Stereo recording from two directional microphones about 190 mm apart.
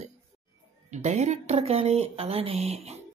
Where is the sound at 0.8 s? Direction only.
40° right (ahead or behind).